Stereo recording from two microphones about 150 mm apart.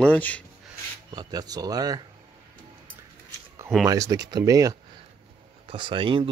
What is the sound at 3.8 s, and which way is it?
Speech, 20° right (ahead or behind).